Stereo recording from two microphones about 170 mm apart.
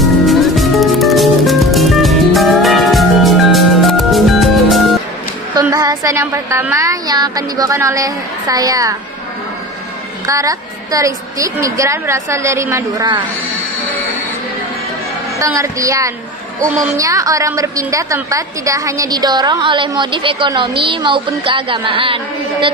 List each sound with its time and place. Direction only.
0.0 s music: centre (ahead or behind)
5.7 s speech: 20° right (ahead or behind)
10.2 s a woman's voice: 20° right (ahead or behind)
15.4 s a woman's voice: 20° right (ahead or behind)